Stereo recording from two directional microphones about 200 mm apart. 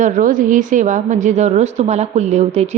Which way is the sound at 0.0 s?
40° right (ahead or behind).